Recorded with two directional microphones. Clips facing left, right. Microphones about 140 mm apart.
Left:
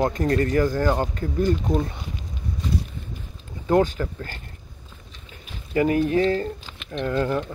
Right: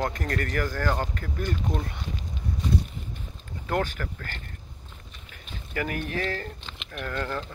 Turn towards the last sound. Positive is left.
turn(degrees=20)  # may be behind; listen again after turning